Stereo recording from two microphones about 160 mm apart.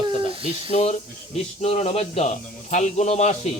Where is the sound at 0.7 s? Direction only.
45° left (ahead or behind).